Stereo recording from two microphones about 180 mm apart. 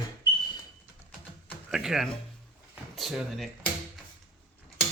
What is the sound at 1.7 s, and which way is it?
Speech, 5° right (ahead or behind).